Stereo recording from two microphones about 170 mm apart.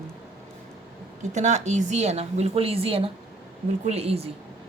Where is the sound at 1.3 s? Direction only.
45° right (ahead or behind).